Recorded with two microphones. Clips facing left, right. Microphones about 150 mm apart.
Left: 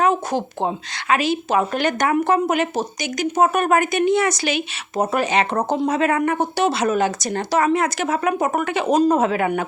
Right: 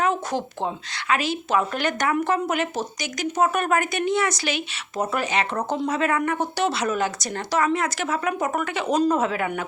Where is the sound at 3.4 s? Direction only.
55° left (ahead or behind).